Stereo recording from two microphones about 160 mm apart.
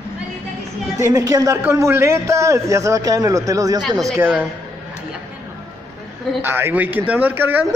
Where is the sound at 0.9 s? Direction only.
20° right (ahead or behind).